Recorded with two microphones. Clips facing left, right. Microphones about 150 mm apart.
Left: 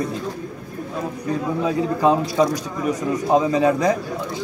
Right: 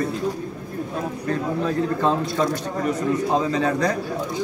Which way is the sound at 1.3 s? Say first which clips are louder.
Left 2 dB; 10° left (ahead or behind).